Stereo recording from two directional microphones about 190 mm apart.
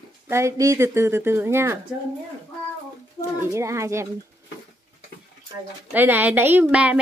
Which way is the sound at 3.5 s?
15° right (ahead or behind).